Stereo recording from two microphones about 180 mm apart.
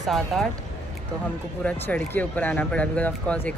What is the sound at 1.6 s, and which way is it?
Speech, 5° left (ahead or behind).